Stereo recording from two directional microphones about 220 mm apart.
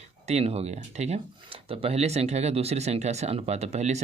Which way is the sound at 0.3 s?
30° right (ahead or behind).